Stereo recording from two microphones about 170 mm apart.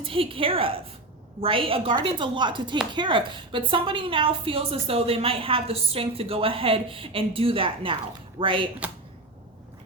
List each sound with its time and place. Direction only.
0.0 s a woman's voice: 30° right (ahead or behind)
8.8 s speech: 10° right (ahead or behind)